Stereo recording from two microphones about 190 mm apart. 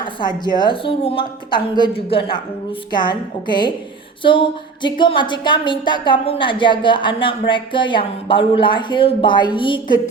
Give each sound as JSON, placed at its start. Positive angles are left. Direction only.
{"t": 0.4, "sound": "speech", "side_deg": 25}